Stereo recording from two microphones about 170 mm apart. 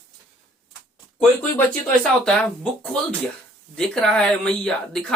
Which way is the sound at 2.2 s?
5° left (ahead or behind).